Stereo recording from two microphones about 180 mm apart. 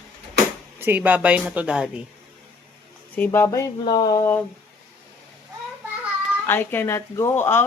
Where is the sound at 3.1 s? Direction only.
10° left (ahead or behind).